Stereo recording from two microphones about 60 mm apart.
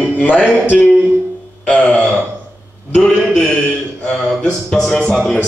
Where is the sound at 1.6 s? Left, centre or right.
Left.